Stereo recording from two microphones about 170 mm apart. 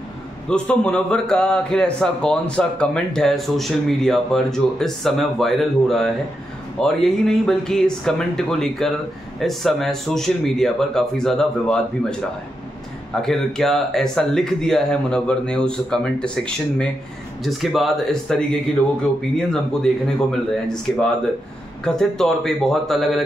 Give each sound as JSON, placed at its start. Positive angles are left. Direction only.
{"t": 0.5, "sound": "a man's voice", "side_deg": 5}